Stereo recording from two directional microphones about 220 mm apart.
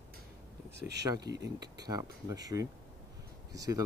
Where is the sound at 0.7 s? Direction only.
50° right (ahead or behind).